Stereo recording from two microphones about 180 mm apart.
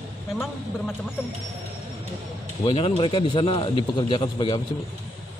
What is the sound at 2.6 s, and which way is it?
A man's voice, 35° left (ahead or behind).